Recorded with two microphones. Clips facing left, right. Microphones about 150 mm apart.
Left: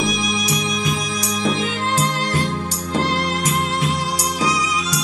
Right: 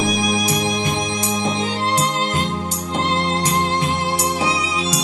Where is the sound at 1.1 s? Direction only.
25° right (ahead or behind).